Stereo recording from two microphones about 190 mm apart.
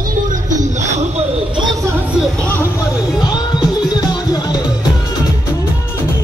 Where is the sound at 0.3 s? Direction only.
40° right (ahead or behind).